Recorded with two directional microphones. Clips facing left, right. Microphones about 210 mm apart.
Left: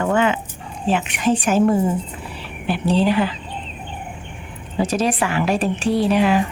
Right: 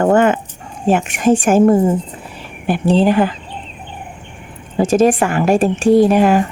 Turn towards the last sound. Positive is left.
turn(degrees=-45)  # may be behind; listen again after turning